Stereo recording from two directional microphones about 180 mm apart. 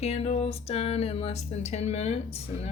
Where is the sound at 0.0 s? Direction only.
35° left (ahead or behind).